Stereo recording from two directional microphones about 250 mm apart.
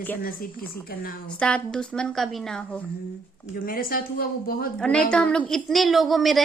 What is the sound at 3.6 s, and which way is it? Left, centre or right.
Speech, left.